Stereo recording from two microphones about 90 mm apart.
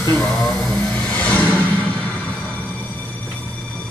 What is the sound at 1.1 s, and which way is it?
Music, 15° left (ahead or behind).